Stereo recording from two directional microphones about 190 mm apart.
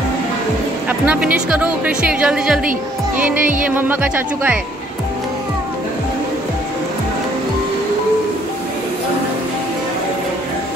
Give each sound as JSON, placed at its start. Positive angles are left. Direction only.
{"t": 0.8, "sound": "speech", "side_deg": -5}
{"t": 3.3, "sound": "music", "side_deg": -45}
{"t": 3.6, "sound": "speech", "side_deg": -10}